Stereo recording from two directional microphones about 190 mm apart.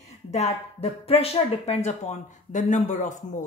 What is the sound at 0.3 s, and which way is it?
A woman's voice, 35° left (ahead or behind).